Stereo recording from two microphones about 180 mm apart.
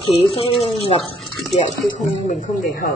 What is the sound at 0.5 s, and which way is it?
Speech, 35° left (ahead or behind).